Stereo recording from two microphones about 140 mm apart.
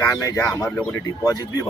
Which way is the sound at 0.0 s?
20° left (ahead or behind).